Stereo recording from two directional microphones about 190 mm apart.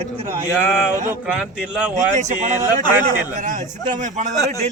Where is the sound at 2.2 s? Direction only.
40° right (ahead or behind).